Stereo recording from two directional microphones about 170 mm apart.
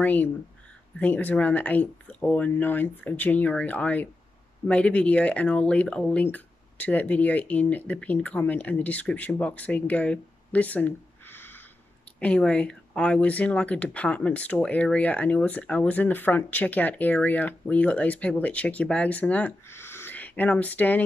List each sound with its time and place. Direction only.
0.0 s speech: 10° left (ahead or behind)